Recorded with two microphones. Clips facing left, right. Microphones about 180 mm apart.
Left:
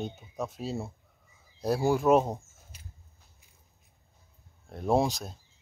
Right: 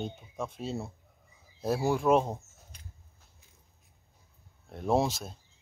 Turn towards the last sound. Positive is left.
turn(degrees=0)  # may be behind; listen again after turning